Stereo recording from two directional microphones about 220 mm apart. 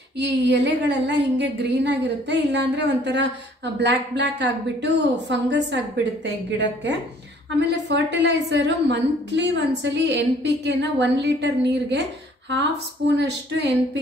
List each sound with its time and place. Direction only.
0.2 s a woman's voice: 50° right (ahead or behind)